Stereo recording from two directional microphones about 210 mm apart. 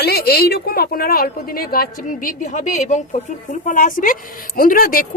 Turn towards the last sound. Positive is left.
turn(degrees=40)  # may be behind; listen again after turning